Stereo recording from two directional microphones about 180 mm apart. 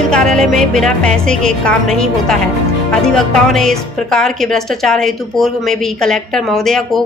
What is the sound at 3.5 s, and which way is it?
A woman's voice, 5° left (ahead or behind).